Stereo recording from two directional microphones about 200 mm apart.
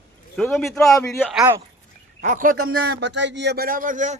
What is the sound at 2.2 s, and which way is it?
Speech, 40° right (ahead or behind).